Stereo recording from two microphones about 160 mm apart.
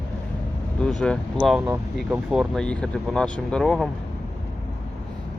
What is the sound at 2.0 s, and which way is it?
Speech, 5° right (ahead or behind).